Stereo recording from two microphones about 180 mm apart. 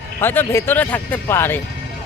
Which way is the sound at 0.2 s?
10° left (ahead or behind).